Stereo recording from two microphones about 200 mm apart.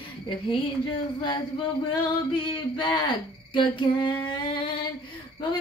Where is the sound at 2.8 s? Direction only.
25° left (ahead or behind).